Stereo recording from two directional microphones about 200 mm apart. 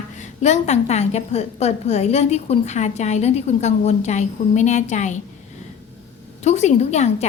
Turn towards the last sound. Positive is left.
turn(degrees=35)  # may be behind; listen again after turning